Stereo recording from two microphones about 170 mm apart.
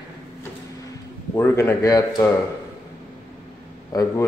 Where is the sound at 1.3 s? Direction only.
15° left (ahead or behind).